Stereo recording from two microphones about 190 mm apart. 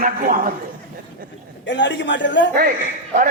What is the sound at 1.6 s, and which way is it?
Speech, 70° left (ahead or behind).